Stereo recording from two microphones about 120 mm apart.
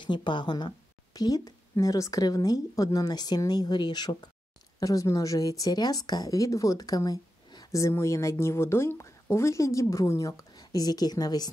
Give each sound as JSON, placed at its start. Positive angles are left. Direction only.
{"t": 0.0, "sound": "a woman's voice", "side_deg": 40}